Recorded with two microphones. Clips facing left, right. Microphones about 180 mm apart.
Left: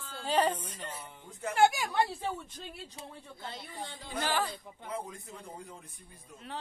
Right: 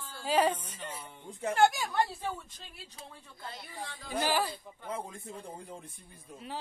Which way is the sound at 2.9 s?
25° left (ahead or behind).